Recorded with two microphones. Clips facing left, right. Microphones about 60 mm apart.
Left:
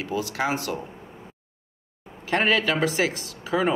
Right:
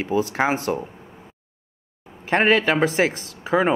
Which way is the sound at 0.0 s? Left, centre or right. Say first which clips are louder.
Right 5 dB; right.